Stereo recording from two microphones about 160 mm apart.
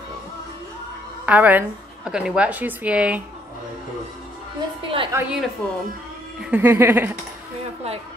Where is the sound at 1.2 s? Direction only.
10° right (ahead or behind).